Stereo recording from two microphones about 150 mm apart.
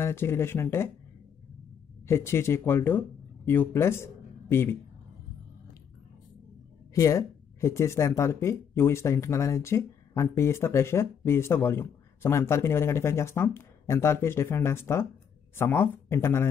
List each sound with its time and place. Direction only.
0.0 s speech: 15° left (ahead or behind)
2.0 s speech: 15° left (ahead or behind)
6.9 s speech: 20° left (ahead or behind)